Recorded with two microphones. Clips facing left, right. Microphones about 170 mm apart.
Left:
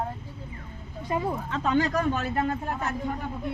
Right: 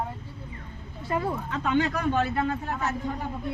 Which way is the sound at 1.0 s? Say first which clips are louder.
Even; 15° left (ahead or behind).